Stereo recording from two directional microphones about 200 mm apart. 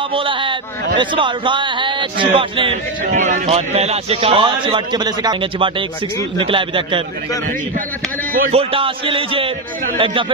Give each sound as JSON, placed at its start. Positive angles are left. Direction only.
{"t": 0.1, "sound": "a man's voice", "side_deg": -25}
{"t": 3.1, "sound": "a man's voice", "side_deg": -35}
{"t": 8.3, "sound": "speech", "side_deg": -45}
{"t": 8.5, "sound": "a man's voice", "side_deg": -25}